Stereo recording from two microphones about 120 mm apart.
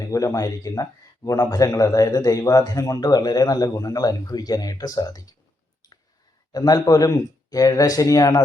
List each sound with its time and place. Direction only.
0.0 s speech: 30° left (ahead or behind)
6.5 s a man's voice: 30° left (ahead or behind)